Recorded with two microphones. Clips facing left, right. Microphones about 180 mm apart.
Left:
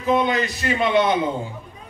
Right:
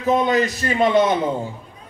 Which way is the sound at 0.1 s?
40° right (ahead or behind).